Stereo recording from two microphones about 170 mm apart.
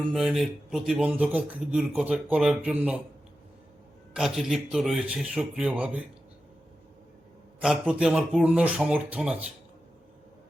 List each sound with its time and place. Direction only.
0.1 s speech: 5° right (ahead or behind)
4.1 s speech: centre (ahead or behind)
7.6 s speech: 5° right (ahead or behind)